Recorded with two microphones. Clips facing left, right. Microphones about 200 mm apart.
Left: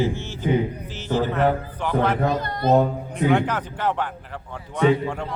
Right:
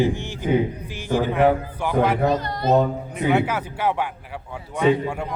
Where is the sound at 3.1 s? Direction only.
5° right (ahead or behind).